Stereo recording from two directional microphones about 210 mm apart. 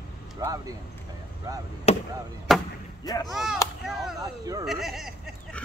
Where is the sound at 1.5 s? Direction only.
15° right (ahead or behind).